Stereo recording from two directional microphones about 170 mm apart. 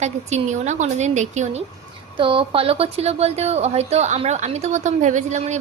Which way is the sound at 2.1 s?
30° right (ahead or behind).